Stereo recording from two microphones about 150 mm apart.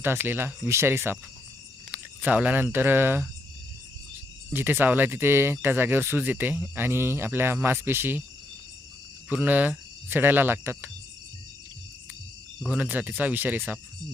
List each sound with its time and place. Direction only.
0.0 s speech: 15° right (ahead or behind)
4.5 s speech: 15° right (ahead or behind)
9.3 s speech: 10° right (ahead or behind)
12.6 s speech: 10° right (ahead or behind)